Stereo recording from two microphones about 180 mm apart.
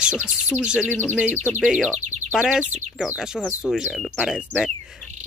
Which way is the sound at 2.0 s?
40° right (ahead or behind).